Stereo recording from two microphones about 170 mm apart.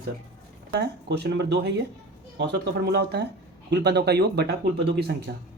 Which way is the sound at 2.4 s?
70° right (ahead or behind).